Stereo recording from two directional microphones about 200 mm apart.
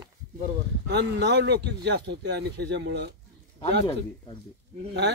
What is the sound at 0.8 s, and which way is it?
Speech, 55° right (ahead or behind).